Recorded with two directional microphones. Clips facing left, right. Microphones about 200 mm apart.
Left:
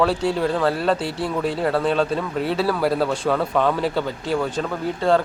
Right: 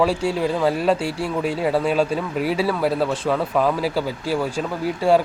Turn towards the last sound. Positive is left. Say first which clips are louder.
# right 1 dB
turn(degrees=-10)  # may be behind; listen again after turning